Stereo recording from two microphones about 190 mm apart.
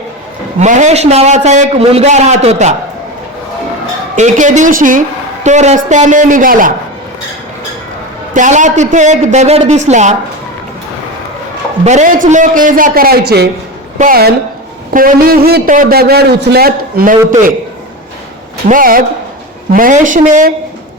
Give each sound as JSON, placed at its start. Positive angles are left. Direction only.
{"t": 0.6, "sound": "a woman's voice", "side_deg": -40}
{"t": 4.1, "sound": "a woman's voice", "side_deg": -40}
{"t": 8.3, "sound": "a woman's voice", "side_deg": -40}
{"t": 11.9, "sound": "a man's voice", "side_deg": -40}
{"t": 18.7, "sound": "a man's voice", "side_deg": -50}